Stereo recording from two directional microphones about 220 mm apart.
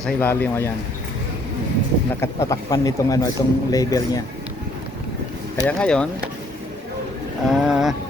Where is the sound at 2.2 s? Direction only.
15° left (ahead or behind).